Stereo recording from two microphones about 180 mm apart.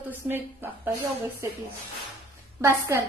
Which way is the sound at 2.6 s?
15° right (ahead or behind).